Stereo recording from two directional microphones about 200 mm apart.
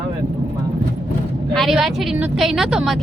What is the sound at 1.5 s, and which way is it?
A woman's voice, centre (ahead or behind).